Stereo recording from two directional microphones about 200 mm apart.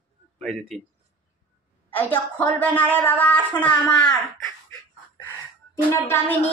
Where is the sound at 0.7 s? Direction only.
Centre (ahead or behind).